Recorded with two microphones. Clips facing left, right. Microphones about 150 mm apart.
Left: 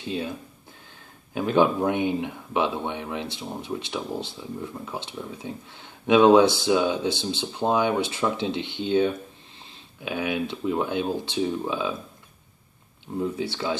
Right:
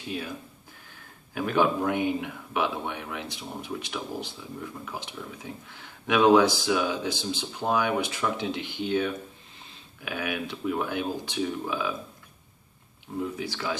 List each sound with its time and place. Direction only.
0.0 s speech: 25° left (ahead or behind)
1.3 s speech: 25° left (ahead or behind)
13.2 s speech: 25° left (ahead or behind)